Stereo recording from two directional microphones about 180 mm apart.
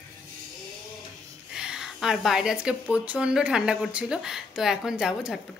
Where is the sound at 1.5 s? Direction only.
5° right (ahead or behind).